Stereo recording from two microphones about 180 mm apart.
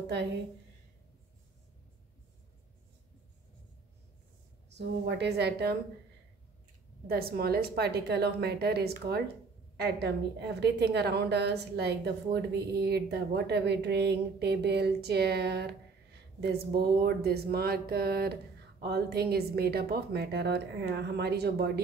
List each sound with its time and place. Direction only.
0.0 s a woman's voice: 70° right (ahead or behind)
4.7 s a woman's voice: 70° right (ahead or behind)
7.1 s a woman's voice: 60° right (ahead or behind)